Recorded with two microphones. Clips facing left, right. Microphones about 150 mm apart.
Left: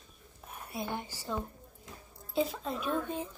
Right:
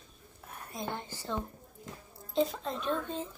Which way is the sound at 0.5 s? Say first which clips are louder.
Left 1 dB; 15° left (ahead or behind).